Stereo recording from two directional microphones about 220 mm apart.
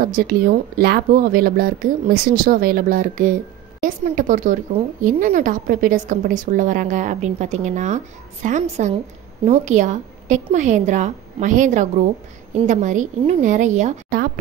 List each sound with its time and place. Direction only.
0.0 s a woman's voice: 40° right (ahead or behind)